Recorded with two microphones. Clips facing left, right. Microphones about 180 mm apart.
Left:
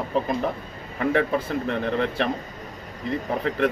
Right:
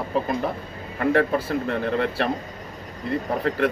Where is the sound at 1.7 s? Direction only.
5° right (ahead or behind).